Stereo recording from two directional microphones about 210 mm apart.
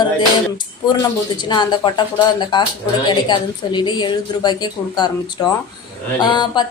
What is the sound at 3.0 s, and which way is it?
A woman's voice, 20° left (ahead or behind).